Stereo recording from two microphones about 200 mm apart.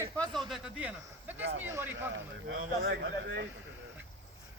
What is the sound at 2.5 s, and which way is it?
Speech, 75° right (ahead or behind).